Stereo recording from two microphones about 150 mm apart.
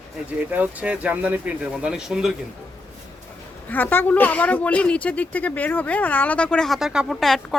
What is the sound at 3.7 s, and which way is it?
Speech, 10° left (ahead or behind).